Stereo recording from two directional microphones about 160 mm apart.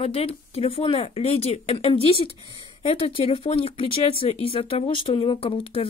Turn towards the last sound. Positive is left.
turn(degrees=35)  # may be behind; listen again after turning